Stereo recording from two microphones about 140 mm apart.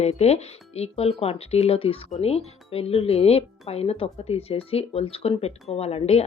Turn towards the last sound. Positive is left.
turn(degrees=45)  # may be behind; listen again after turning